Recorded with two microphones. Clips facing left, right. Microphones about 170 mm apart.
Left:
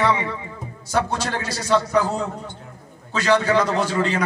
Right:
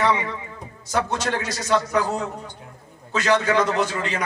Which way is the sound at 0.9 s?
30° left (ahead or behind).